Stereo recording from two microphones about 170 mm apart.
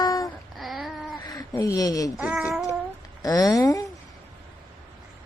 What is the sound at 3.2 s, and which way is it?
Speech, 20° left (ahead or behind).